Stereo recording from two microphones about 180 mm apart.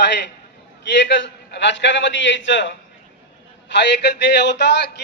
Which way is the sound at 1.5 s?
80° left.